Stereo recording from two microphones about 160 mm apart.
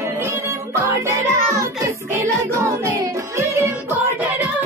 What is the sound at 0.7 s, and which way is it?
Music, 20° right (ahead or behind).